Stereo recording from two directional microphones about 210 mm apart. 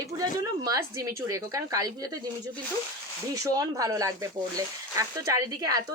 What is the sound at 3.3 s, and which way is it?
Speech, 15° right (ahead or behind).